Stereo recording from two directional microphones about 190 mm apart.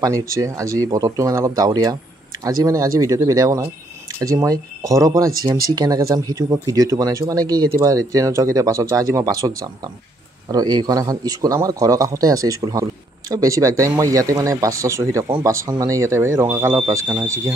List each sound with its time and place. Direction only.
0.0 s a man's voice: 15° right (ahead or behind)
10.5 s a man's voice: 20° right (ahead or behind)